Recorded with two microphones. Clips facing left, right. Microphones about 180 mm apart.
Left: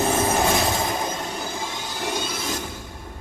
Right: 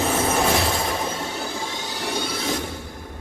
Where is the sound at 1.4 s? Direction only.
65° right (ahead or behind).